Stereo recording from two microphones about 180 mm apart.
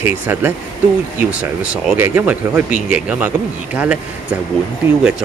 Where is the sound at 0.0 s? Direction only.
10° right (ahead or behind).